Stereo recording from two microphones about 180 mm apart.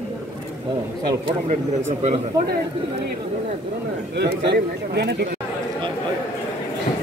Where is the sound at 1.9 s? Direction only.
40° right (ahead or behind).